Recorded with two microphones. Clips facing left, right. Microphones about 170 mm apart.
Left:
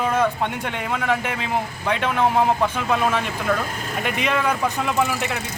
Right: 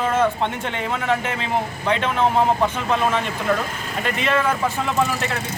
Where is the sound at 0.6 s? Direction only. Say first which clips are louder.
Even; 5° left (ahead or behind).